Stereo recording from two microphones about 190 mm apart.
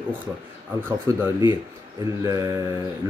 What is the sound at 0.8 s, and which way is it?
Speech, 10° right (ahead or behind).